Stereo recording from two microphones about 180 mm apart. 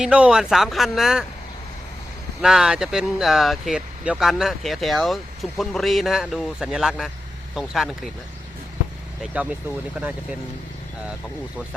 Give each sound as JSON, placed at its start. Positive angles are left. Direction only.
{"t": 0.0, "sound": "speech", "side_deg": -5}
{"t": 2.4, "sound": "speech", "side_deg": -5}
{"t": 9.2, "sound": "speech", "side_deg": -5}